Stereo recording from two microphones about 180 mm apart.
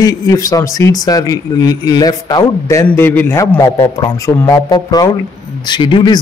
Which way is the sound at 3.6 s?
25° left (ahead or behind).